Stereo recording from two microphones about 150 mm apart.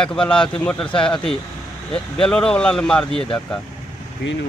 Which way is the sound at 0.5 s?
5° left (ahead or behind).